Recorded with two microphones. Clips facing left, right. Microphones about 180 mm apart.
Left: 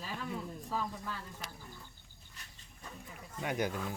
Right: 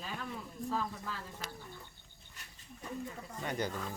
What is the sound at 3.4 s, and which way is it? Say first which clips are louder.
Speech: left 2 dB; 10° left (ahead or behind).